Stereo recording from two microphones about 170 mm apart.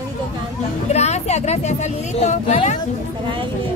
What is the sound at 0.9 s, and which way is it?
Music, 40° left (ahead or behind).